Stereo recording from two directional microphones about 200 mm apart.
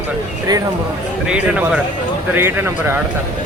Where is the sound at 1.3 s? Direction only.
5° right (ahead or behind).